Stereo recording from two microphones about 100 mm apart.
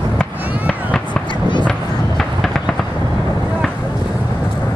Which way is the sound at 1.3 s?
50° left (ahead or behind).